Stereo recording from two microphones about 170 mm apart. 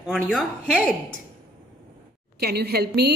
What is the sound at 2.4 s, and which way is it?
Speech, 70° right (ahead or behind).